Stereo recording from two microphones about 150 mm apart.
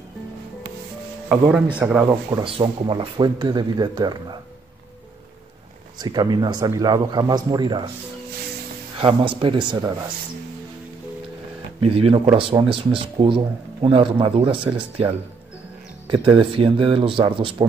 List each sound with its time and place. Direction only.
1.5 s a man's voice: 10° right (ahead or behind)
2.4 s speech: 35° right (ahead or behind)
5.9 s speech: 30° right (ahead or behind)
8.9 s speech: 35° right (ahead or behind)
11.8 s speech: 40° right (ahead or behind)